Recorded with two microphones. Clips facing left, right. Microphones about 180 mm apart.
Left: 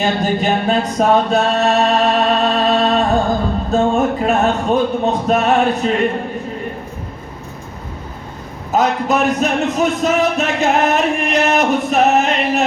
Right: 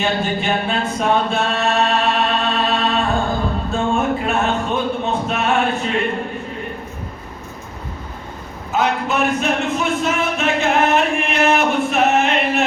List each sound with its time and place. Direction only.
0.0 s a sound: 40° left (ahead or behind)
3.7 s music: 40° left (ahead or behind)
8.7 s speech: 40° left (ahead or behind)